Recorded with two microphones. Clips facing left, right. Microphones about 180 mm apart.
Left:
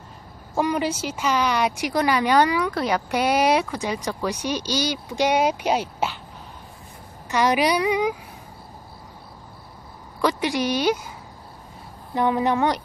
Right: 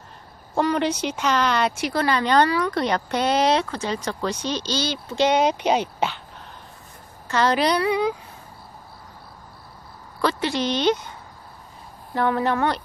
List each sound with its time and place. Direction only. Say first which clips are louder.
0.6 s speech: right 1 dB; 10° left (ahead or behind)
7.2 s speech: even; 15° left (ahead or behind)
10.2 s speech: left 1 dB; 15° left (ahead or behind)